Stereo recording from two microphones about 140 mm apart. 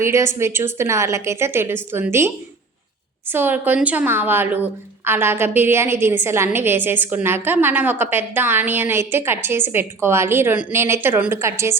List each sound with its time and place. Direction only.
0.0 s a woman's voice: 20° right (ahead or behind)